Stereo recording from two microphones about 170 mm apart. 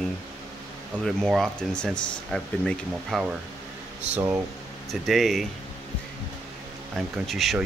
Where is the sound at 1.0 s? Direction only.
5° left (ahead or behind).